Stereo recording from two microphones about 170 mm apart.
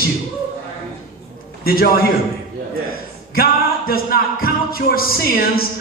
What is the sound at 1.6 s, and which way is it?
Speech, 60° left (ahead or behind).